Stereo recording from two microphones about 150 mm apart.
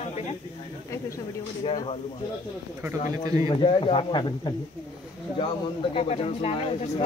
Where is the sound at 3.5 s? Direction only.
35° left (ahead or behind).